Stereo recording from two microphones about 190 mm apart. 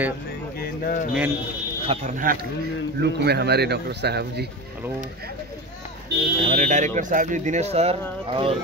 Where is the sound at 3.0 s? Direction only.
60° right (ahead or behind).